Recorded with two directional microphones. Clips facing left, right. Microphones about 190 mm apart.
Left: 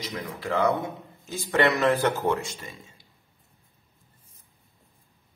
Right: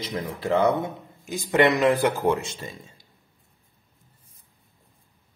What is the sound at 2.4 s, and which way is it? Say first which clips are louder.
Speech: right 2 dB; 25° right (ahead or behind).